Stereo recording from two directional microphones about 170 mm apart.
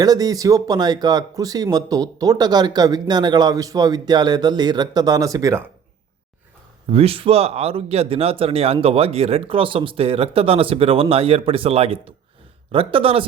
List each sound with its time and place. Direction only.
0.0 s speech: 20° right (ahead or behind)
6.9 s speech: 35° right (ahead or behind)